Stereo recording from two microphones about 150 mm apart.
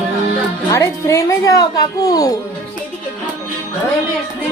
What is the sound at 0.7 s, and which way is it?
A woman's voice, 20° left (ahead or behind).